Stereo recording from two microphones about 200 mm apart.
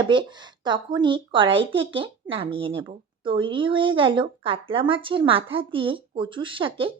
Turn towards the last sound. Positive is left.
turn(degrees=-25)  # may be behind; listen again after turning